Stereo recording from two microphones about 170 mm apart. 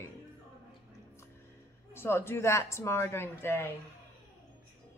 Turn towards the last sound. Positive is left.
turn(degrees=15)  # may be behind; listen again after turning